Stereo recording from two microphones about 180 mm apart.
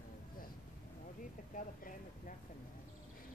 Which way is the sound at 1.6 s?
45° left (ahead or behind).